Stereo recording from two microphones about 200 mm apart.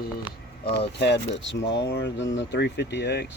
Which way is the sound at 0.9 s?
60° left (ahead or behind).